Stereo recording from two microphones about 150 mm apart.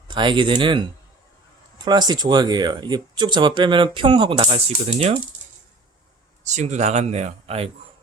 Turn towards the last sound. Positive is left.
turn(degrees=-45)  # may be behind; listen again after turning